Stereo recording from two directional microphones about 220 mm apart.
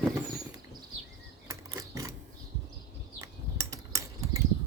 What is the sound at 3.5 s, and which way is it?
Cutlery, 15° right (ahead or behind).